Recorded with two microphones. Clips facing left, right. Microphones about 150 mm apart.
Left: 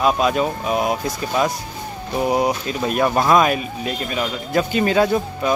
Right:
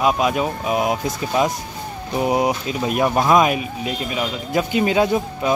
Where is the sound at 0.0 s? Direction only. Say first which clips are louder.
Left 1 dB; 10° right (ahead or behind).